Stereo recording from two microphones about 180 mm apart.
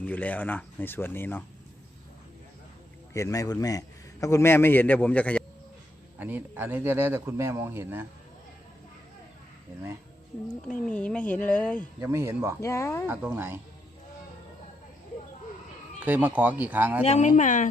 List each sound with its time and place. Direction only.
0.0 s a man's voice: 10° left (ahead or behind)
3.1 s a man's voice: 20° left (ahead or behind)
6.1 s a man's voice: 10° right (ahead or behind)
10.5 s a man's voice: 5° left (ahead or behind)
11.9 s a man's voice: 15° right (ahead or behind)
12.5 s a man's voice: 15° left (ahead or behind)
13.1 s a man's voice: 10° right (ahead or behind)
16.0 s a man's voice: 10° right (ahead or behind)
17.0 s a woman's voice: 40° left (ahead or behind)